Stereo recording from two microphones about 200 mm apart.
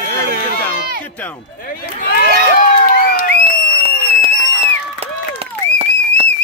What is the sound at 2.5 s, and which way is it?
Crowd, 45° left (ahead or behind).